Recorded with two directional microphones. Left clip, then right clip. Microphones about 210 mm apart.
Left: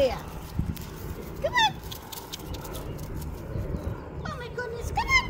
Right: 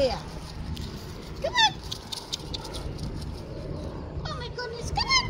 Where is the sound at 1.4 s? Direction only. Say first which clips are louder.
Right 1 dB; 20° right (ahead or behind).